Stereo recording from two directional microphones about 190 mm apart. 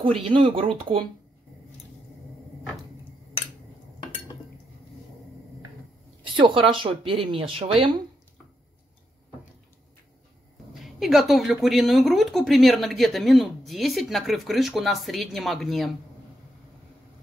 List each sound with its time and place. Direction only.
0.0 s speech: 30° right (ahead or behind)
6.2 s speech: 25° right (ahead or behind)
10.7 s speech: centre (ahead or behind)